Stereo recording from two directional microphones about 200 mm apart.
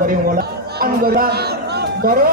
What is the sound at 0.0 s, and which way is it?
A man's voice, 45° right (ahead or behind).